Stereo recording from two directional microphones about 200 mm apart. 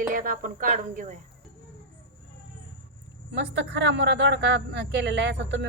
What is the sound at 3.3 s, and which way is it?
Speech, 60° right (ahead or behind).